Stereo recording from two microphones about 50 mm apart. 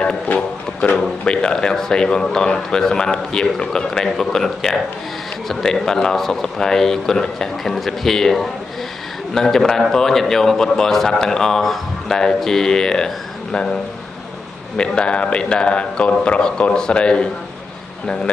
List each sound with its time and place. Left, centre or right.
0.8 s a man's voice: centre
14.8 s a man's voice: left